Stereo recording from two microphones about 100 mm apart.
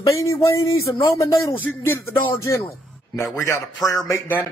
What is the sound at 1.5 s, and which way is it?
Speech, 20° left (ahead or behind).